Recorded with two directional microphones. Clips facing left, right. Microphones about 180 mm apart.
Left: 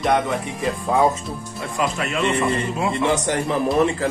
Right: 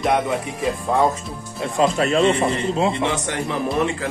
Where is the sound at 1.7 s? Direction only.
35° right (ahead or behind).